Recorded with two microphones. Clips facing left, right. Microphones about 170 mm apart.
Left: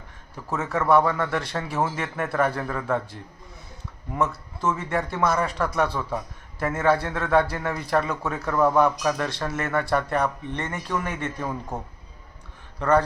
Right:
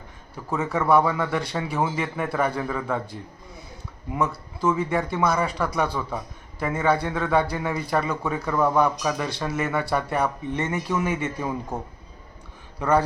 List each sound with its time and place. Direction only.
0.5 s a man's voice: centre (ahead or behind)
12.8 s a man's voice: 5° right (ahead or behind)